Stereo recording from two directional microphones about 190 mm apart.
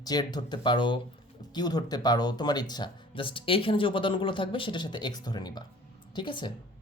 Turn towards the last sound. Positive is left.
turn(degrees=25)  # may be behind; listen again after turning